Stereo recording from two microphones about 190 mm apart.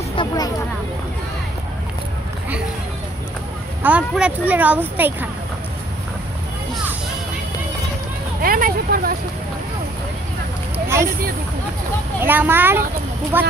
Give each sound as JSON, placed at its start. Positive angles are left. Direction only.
{"t": 0.1, "sound": "speech", "side_deg": 25}
{"t": 3.8, "sound": "speech", "side_deg": -5}
{"t": 8.4, "sound": "speech", "side_deg": -50}
{"t": 12.2, "sound": "speech", "side_deg": -10}